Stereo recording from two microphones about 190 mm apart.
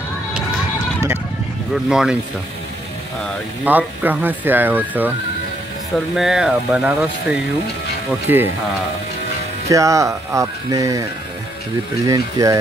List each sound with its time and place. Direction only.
1.7 s speech: 5° right (ahead or behind)
3.6 s speech: 10° right (ahead or behind)
6.1 s speech: 5° right (ahead or behind)
9.7 s speech: 15° right (ahead or behind)
12.1 s speech: 20° right (ahead or behind)